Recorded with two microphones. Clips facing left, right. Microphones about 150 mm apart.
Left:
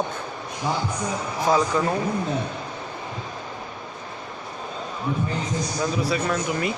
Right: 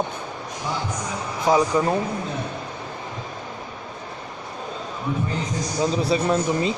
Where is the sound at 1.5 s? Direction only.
15° right (ahead or behind).